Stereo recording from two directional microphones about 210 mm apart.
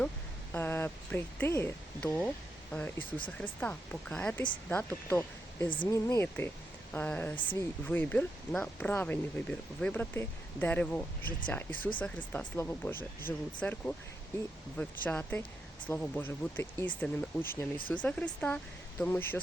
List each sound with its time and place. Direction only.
0.5 s speech: 10° left (ahead or behind)